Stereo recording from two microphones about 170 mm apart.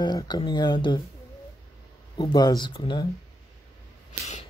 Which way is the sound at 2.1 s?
25° left (ahead or behind).